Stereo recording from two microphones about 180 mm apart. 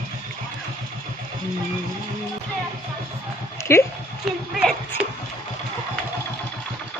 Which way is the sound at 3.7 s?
15° left (ahead or behind).